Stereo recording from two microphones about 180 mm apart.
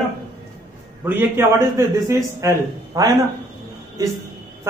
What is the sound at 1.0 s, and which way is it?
A man's voice, 10° right (ahead or behind).